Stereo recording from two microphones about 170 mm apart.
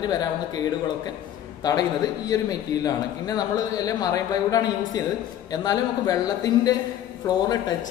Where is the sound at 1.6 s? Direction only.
20° left (ahead or behind).